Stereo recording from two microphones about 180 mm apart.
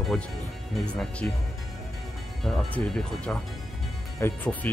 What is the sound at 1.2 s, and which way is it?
Speech, 10° left (ahead or behind).